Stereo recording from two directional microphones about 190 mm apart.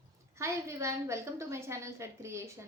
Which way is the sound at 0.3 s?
15° right (ahead or behind).